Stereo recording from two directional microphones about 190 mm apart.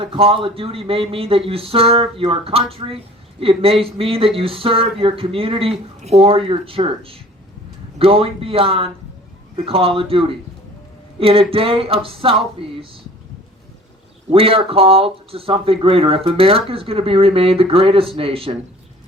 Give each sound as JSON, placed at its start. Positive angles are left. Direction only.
{"t": 0.0, "sound": "speech", "side_deg": -30}
{"t": 14.3, "sound": "speech", "side_deg": -30}